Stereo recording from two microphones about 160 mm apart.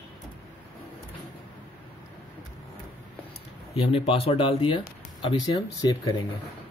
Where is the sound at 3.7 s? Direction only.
35° left (ahead or behind).